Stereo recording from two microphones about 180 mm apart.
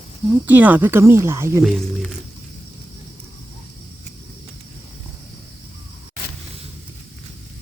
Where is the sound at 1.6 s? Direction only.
Centre (ahead or behind).